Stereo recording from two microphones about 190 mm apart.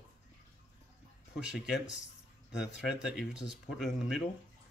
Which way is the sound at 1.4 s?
5° right (ahead or behind).